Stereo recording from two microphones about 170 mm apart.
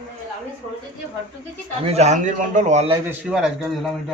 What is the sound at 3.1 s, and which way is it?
Speech, 5° right (ahead or behind).